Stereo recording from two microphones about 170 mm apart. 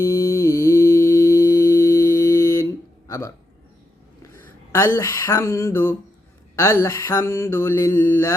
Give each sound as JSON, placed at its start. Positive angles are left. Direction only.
{"t": 0.0, "sound": "a sound", "side_deg": 20}
{"t": 3.1, "sound": "speech", "side_deg": 20}
{"t": 4.7, "sound": "mantra", "side_deg": 20}